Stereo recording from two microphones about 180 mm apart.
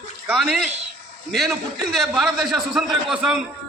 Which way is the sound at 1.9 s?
Centre (ahead or behind).